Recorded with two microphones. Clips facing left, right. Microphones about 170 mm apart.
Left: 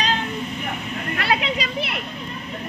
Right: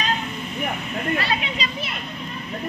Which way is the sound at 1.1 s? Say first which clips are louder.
Left 5 dB; 70° left (ahead or behind).